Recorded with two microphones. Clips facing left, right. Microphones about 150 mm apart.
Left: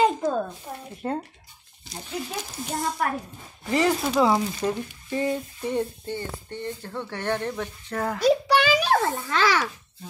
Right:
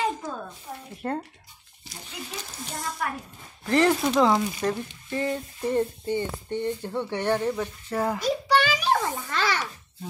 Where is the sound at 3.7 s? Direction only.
Centre (ahead or behind).